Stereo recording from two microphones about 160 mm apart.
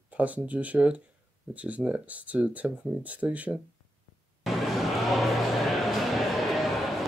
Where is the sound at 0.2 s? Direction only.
10° right (ahead or behind).